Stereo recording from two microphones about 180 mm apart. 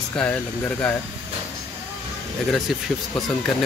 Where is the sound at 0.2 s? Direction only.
5° left (ahead or behind).